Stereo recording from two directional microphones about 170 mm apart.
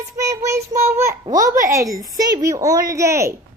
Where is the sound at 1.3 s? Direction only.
20° right (ahead or behind).